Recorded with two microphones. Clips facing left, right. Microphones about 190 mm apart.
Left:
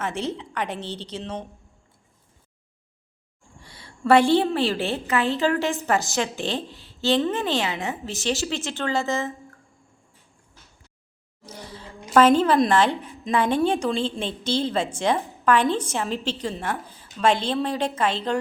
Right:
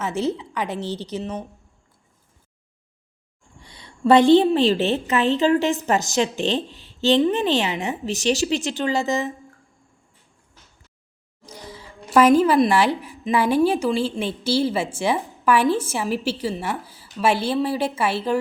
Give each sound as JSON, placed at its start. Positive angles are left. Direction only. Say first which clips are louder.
{"t": 0.2, "sound": "a woman's voice", "louder": "right 4 dB", "side_deg": -10}
{"t": 3.6, "sound": "a woman's voice", "louder": "right 5 dB", "side_deg": -20}
{"t": 11.4, "sound": "a sound", "louder": "even", "side_deg": -10}
{"t": 12.1, "sound": "a woman's voice", "louder": "right 2 dB", "side_deg": -10}